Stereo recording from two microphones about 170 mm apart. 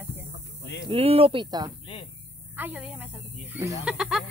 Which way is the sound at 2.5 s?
10° right (ahead or behind).